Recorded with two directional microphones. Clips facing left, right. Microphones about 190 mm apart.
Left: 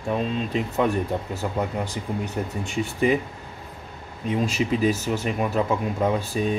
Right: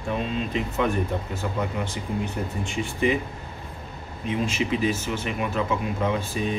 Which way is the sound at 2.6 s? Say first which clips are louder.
Left 2 dB; 40° left (ahead or behind).